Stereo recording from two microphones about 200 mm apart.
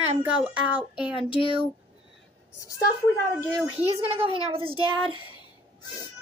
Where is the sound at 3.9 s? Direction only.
30° right (ahead or behind).